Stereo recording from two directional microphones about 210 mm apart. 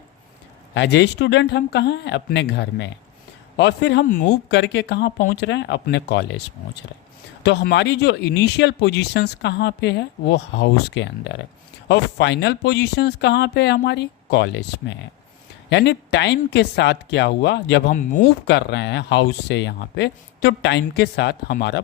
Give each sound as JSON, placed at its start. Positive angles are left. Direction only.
{"t": 0.7, "sound": "speech", "side_deg": 55}
{"t": 4.0, "sound": "speech", "side_deg": 40}
{"t": 7.4, "sound": "speech", "side_deg": 55}